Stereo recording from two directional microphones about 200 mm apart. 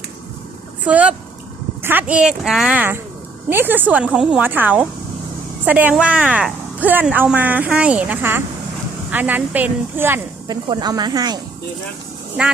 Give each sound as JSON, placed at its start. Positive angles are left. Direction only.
{"t": 0.9, "sound": "speech", "side_deg": -5}
{"t": 12.4, "sound": "speech", "side_deg": -5}